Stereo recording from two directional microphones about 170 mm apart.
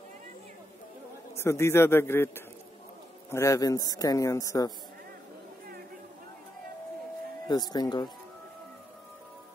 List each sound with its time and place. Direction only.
1.3 s a man's voice: 15° left (ahead or behind)
7.4 s a man's voice: 25° left (ahead or behind)